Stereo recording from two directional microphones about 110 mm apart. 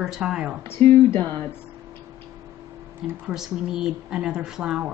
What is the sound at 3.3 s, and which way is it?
Speech, 5° right (ahead or behind).